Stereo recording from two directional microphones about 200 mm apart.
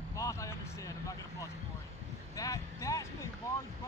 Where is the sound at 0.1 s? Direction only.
15° left (ahead or behind).